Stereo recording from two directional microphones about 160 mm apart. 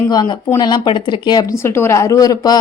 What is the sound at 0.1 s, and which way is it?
Speech, 25° left (ahead or behind).